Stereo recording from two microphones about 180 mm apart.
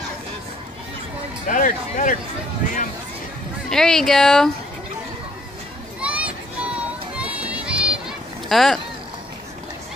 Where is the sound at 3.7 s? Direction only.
Centre (ahead or behind).